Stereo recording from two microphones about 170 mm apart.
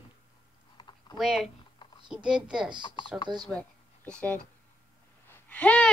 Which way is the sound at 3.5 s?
5° left (ahead or behind).